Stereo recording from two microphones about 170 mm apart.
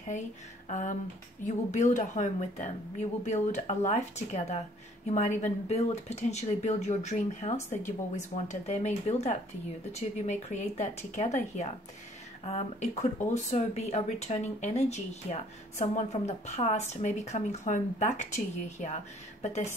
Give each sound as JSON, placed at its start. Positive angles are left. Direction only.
{"t": 0.7, "sound": "speech", "side_deg": 45}